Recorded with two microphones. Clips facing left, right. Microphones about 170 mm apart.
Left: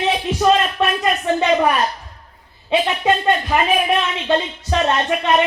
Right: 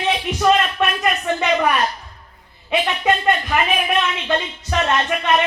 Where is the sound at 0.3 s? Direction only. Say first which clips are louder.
Left 1 dB; 25° left (ahead or behind).